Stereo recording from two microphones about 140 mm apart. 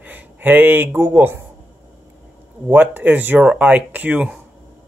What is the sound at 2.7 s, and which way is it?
Speech, 10° right (ahead or behind).